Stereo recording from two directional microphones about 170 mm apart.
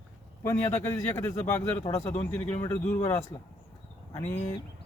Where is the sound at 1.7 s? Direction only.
40° left (ahead or behind).